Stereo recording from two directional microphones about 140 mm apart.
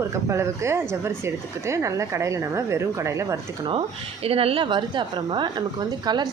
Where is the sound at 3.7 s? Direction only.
40° right (ahead or behind).